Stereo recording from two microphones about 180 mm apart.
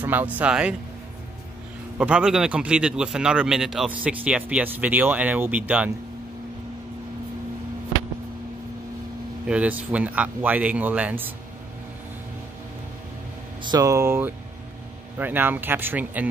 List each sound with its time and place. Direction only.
0.0 s a man's voice: 10° right (ahead or behind)
2.0 s a man's voice: 5° right (ahead or behind)
9.5 s a man's voice: 10° right (ahead or behind)
13.6 s a man's voice: 20° right (ahead or behind)